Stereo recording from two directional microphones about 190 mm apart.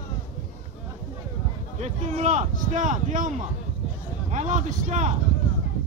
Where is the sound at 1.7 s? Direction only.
35° right (ahead or behind).